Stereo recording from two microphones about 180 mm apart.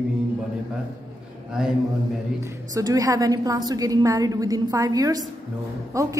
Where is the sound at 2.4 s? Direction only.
20° right (ahead or behind).